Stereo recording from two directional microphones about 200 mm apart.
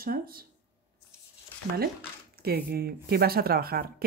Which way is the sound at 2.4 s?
50° right (ahead or behind).